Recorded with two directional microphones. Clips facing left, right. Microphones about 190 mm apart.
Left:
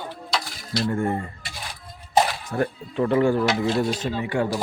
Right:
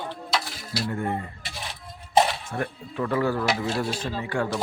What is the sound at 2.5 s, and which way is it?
Speech, 30° left (ahead or behind).